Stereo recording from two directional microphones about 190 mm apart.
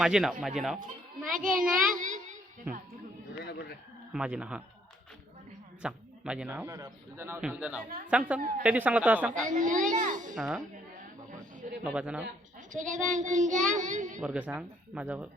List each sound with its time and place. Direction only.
0.0 s speech: 5° right (ahead or behind)
1.3 s a child's voice: 45° right (ahead or behind)
1.7 s a sound: 45° right (ahead or behind)
3.3 s a sound: 60° left (ahead or behind)
4.1 s speech: 5° right (ahead or behind)
5.8 s a man's voice: 5° right (ahead or behind)
7.9 s a child's voice: 50° right (ahead or behind)
8.6 s a man's voice: 5° right (ahead or behind)
9.5 s a child's voice: 40° right (ahead or behind)
10.3 s speech: centre (ahead or behind)
11.3 s a sound: 40° right (ahead or behind)
11.8 s a man's voice: 5° right (ahead or behind)
12.5 s a child's voice: 40° right (ahead or behind)
14.2 s a man's voice: 5° right (ahead or behind)